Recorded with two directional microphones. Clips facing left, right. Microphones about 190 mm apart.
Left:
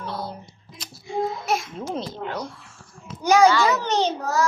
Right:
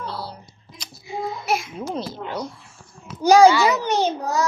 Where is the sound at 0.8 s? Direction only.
Centre (ahead or behind).